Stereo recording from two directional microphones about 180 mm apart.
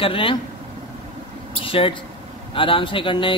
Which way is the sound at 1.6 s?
30° left (ahead or behind).